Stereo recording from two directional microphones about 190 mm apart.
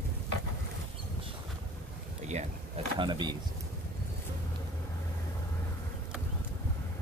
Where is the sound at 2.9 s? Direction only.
25° right (ahead or behind).